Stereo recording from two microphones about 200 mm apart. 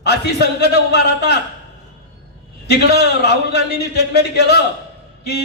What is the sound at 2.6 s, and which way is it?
Speech, 55° left (ahead or behind).